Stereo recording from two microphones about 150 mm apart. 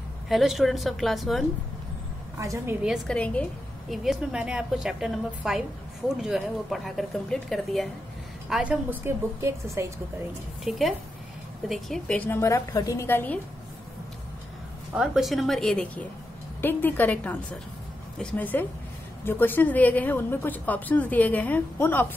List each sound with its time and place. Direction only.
0.3 s a woman's voice: centre (ahead or behind)
2.3 s a woman's voice: 20° right (ahead or behind)
3.1 s a woman's voice: 10° left (ahead or behind); by 9.9 s 20° right (ahead or behind)
10.6 s a woman's voice: centre (ahead or behind)
15.0 s a woman's voice: centre (ahead or behind)